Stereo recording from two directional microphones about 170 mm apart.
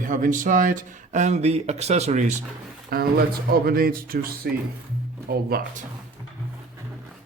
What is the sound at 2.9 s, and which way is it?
Speech, 65° right (ahead or behind).